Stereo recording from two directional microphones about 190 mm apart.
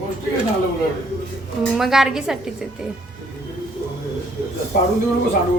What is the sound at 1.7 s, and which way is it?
Speech, centre (ahead or behind).